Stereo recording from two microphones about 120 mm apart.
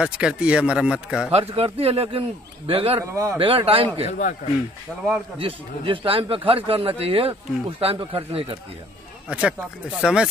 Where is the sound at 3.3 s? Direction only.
50° right (ahead or behind).